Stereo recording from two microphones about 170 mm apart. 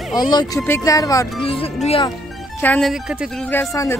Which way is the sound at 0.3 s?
25° left (ahead or behind).